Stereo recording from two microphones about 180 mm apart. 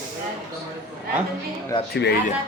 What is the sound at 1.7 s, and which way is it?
Speech, 25° left (ahead or behind).